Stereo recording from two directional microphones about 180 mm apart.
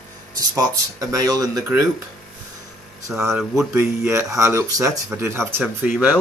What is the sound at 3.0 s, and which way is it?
Speech, 15° right (ahead or behind).